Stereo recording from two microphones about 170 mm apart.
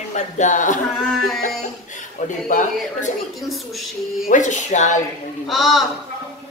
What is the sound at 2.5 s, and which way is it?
Speech, 50° left (ahead or behind).